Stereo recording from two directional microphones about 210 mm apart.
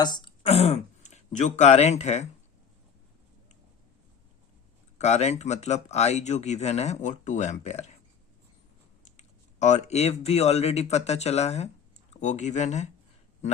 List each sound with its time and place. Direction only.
0.0 s speech: 20° left (ahead or behind)
4.9 s speech: 30° left (ahead or behind)
9.1 s speech: 35° left (ahead or behind)